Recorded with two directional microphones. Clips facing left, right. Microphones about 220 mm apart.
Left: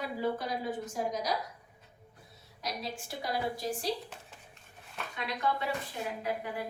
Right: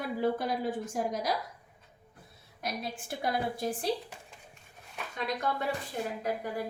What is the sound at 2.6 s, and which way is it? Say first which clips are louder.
A woman's voice: right 1 dB; 55° right (ahead or behind).